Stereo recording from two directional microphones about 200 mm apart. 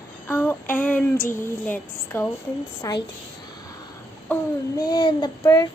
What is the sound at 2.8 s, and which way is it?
Child singing, 20° left (ahead or behind).